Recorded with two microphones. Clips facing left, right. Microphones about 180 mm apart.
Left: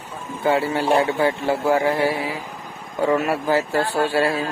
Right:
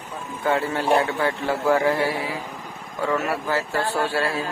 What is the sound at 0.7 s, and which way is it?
Speech, 20° left (ahead or behind).